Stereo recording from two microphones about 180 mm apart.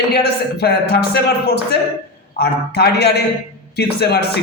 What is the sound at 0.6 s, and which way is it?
Speech, 65° left (ahead or behind).